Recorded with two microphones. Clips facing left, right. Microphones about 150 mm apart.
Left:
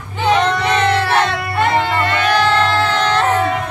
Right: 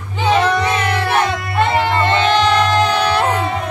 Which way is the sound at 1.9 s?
25° right (ahead or behind).